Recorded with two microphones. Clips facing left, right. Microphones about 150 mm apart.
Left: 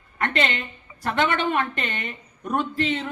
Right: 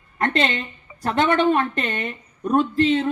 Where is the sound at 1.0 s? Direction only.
40° right (ahead or behind).